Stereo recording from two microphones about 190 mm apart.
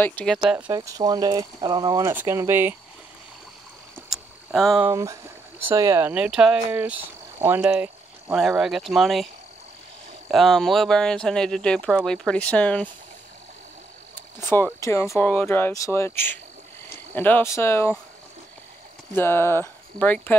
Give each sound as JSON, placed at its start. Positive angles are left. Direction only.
{"t": 0.0, "sound": "speech", "side_deg": 5}
{"t": 0.4, "sound": "speech", "side_deg": -5}
{"t": 0.7, "sound": "speech", "side_deg": -20}
{"t": 4.1, "sound": "a sound", "side_deg": 0}
{"t": 4.8, "sound": "speech", "side_deg": -15}
{"t": 14.4, "sound": "speech", "side_deg": 10}
{"t": 19.1, "sound": "speech", "side_deg": 10}